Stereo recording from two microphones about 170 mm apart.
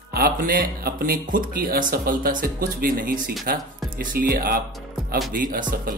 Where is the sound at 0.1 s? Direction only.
60° right (ahead or behind).